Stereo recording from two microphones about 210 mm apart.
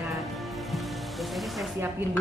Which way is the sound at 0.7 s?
Centre (ahead or behind).